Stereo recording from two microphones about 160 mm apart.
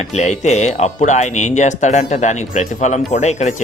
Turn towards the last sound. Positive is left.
turn(degrees=45)  # may be behind; listen again after turning